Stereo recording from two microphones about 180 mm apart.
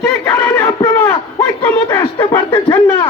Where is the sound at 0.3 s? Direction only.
10° left (ahead or behind).